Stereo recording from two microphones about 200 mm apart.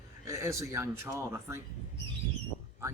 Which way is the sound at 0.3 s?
15° right (ahead or behind).